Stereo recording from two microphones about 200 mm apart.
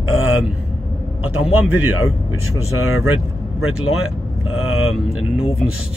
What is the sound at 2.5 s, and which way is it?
Speech, 90° left.